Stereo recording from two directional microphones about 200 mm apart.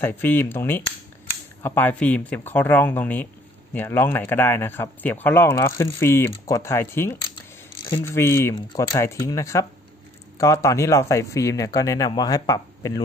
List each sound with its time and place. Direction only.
0.0 s speech: 10° left (ahead or behind)